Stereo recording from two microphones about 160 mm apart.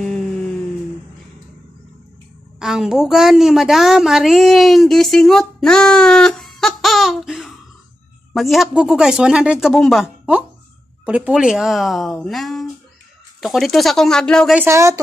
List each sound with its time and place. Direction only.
2.6 s a woman's voice: 5° right (ahead or behind)
14.6 s speech: 15° right (ahead or behind)